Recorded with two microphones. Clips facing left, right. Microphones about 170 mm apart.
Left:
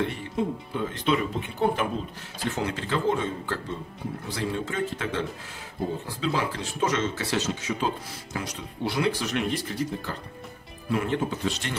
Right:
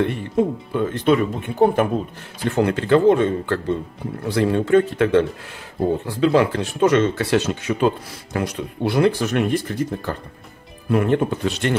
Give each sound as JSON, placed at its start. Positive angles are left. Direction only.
{"t": 0.0, "sound": "speech", "side_deg": -55}